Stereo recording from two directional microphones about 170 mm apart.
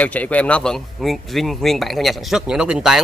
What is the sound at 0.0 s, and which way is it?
Speech, 10° left (ahead or behind).